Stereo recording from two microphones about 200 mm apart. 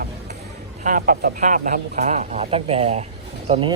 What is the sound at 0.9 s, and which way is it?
A man's voice, 45° right (ahead or behind).